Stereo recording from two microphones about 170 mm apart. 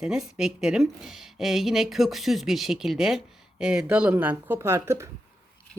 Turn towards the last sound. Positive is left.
turn(degrees=-15)  # may be behind; listen again after turning